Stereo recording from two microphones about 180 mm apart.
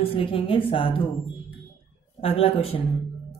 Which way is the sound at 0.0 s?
30° left (ahead or behind).